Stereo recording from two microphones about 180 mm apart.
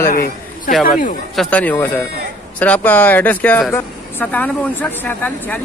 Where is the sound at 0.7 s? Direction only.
Centre (ahead or behind).